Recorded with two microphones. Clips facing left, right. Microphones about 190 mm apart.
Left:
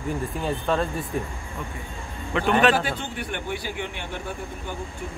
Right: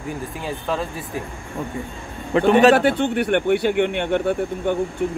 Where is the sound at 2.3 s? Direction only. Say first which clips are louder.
Right 7 dB; 35° right (ahead or behind).